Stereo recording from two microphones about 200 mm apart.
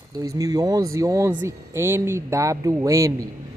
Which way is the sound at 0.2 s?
20° right (ahead or behind).